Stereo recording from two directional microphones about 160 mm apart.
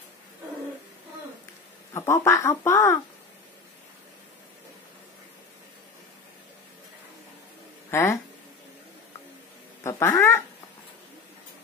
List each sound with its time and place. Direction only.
2.0 s speech: 15° left (ahead or behind)
7.9 s speech: 15° left (ahead or behind)
9.8 s speech: 20° left (ahead or behind)